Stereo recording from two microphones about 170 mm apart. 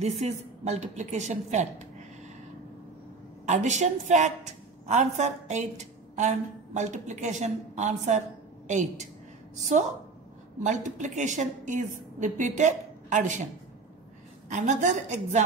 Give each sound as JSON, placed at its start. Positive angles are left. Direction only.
{"t": 0.0, "sound": "a woman's voice", "side_deg": -40}
{"t": 3.4, "sound": "a woman's voice", "side_deg": -45}
{"t": 10.6, "sound": "a woman's voice", "side_deg": -45}
{"t": 14.5, "sound": "a woman's voice", "side_deg": -45}